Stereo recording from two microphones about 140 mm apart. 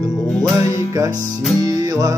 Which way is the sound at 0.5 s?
20° right (ahead or behind).